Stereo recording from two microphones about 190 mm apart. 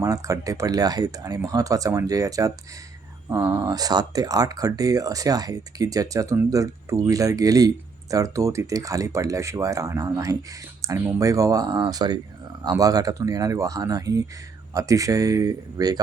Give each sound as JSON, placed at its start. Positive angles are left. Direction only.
{"t": 0.0, "sound": "speech", "side_deg": -15}